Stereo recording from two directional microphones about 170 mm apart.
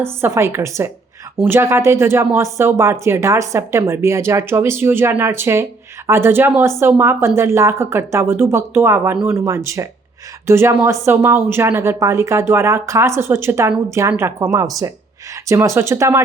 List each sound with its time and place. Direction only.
0.0 s speech: 15° right (ahead or behind)